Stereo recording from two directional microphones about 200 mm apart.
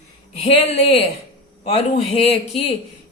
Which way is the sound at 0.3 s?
30° left (ahead or behind).